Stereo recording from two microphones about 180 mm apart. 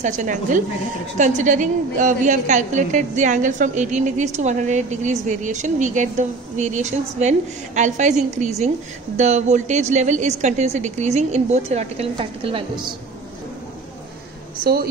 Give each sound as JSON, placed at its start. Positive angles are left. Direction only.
{"t": 0.0, "sound": "a woman's voice", "side_deg": -45}